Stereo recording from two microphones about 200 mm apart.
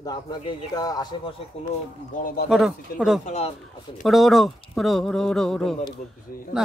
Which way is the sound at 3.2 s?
35° left (ahead or behind).